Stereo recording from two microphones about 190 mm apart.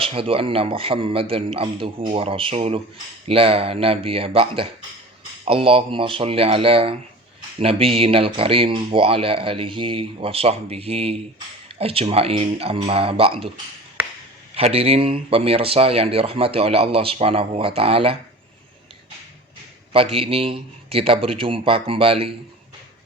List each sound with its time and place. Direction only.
0.0 s speech: 30° right (ahead or behind)
14.5 s speech: 30° right (ahead or behind)
19.9 s speech: 30° right (ahead or behind)